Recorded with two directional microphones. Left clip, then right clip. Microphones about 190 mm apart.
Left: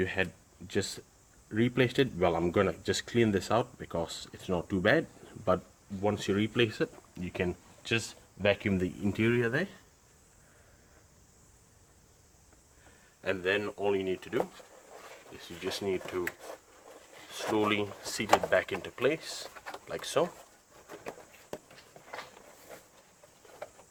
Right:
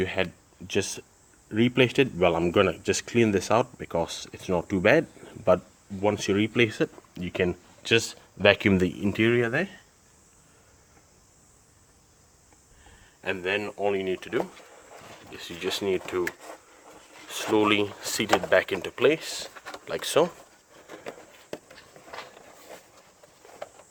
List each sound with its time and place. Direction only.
0.0 s speech: 30° right (ahead or behind); by 8.9 s 55° right (ahead or behind)
9.0 s speech: 30° right (ahead or behind)
13.2 s speech: 10° right (ahead or behind); by 16.2 s 40° right (ahead or behind)
17.3 s speech: 40° right (ahead or behind)